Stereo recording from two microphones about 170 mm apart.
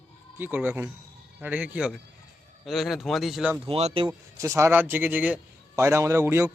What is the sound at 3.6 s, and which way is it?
Speech, 35° right (ahead or behind).